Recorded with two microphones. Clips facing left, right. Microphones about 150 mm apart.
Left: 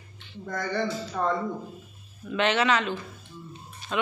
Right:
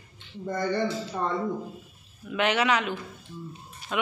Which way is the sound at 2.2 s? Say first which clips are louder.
Left 1 dB; 10° right (ahead or behind).